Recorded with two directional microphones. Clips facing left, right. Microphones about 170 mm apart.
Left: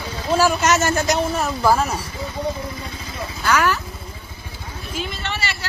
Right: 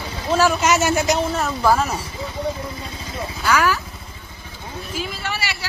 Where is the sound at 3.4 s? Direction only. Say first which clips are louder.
Even; 5° right (ahead or behind).